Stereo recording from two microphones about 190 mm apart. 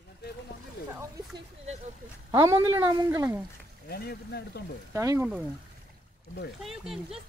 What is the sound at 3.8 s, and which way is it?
Speech, 55° left (ahead or behind).